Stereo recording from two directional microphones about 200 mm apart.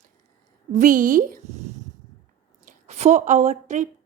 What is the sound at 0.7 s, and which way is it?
A woman's voice, 40° right (ahead or behind).